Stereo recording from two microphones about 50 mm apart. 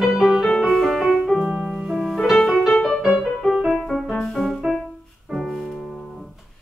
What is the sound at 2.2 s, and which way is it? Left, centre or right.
Music, centre.